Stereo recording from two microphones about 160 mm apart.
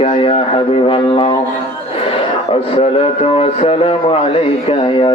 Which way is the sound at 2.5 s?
35° left (ahead or behind).